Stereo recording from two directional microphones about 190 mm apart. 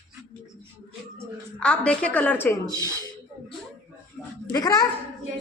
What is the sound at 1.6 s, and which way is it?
A woman's voice, 5° left (ahead or behind).